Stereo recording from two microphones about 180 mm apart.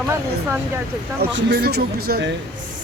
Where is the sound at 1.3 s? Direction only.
65° right (ahead or behind).